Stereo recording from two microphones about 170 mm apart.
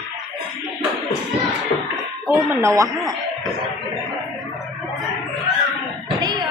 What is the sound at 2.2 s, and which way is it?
Speech, 15° right (ahead or behind).